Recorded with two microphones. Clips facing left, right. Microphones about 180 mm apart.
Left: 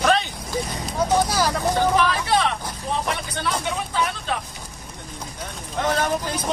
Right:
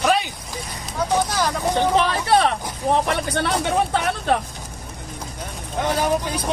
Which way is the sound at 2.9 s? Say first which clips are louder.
Right 7 dB; 60° right (ahead or behind).